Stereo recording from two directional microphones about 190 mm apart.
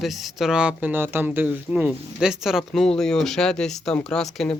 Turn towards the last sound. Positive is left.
turn(degrees=5)  # may be behind; listen again after turning